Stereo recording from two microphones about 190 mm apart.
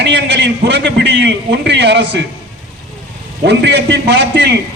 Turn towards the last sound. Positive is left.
turn(degrees=-60)  # may be behind; listen again after turning